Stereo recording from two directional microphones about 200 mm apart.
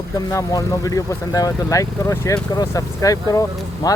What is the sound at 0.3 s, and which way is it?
Speech, 15° left (ahead or behind).